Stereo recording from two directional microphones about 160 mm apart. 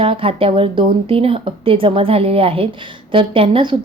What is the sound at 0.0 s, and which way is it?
A woman's voice, 35° right (ahead or behind).